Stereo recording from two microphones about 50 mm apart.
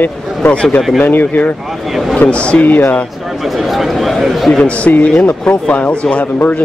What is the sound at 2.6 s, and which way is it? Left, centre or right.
Speech, left.